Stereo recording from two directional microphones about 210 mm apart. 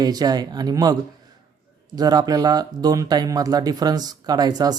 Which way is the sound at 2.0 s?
20° right (ahead or behind).